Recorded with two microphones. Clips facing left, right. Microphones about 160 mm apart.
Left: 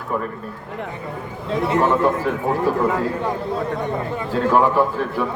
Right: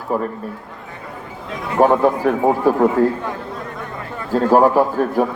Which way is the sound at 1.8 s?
45° right (ahead or behind).